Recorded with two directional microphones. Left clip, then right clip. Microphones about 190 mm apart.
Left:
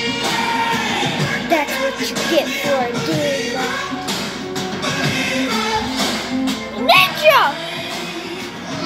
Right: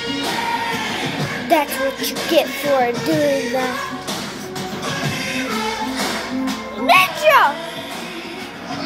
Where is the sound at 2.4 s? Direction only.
20° right (ahead or behind).